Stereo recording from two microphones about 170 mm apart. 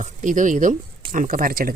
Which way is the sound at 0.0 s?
45° right (ahead or behind).